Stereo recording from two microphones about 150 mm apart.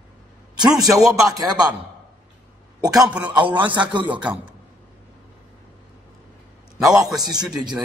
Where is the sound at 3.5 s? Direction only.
30° right (ahead or behind).